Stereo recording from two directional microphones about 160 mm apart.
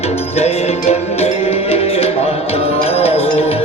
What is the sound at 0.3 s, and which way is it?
Music, 40° left (ahead or behind).